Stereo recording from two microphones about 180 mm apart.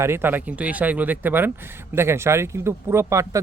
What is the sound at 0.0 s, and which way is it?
Speech, 10° right (ahead or behind).